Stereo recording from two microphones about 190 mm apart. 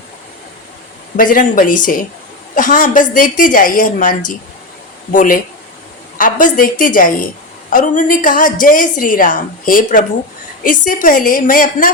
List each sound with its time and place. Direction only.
1.1 s a woman's voice: 45° left (ahead or behind)